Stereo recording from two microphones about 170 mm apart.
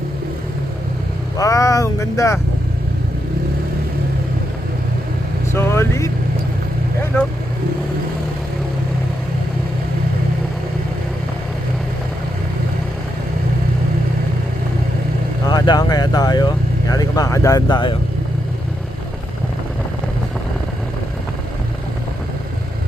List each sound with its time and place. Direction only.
1.4 s speech: 20° left (ahead or behind)
5.5 s vehicle: 15° left (ahead or behind)
15.4 s vehicle: 25° left (ahead or behind)